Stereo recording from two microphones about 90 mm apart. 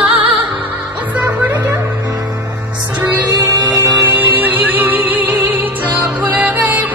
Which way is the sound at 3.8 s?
20° right (ahead or behind).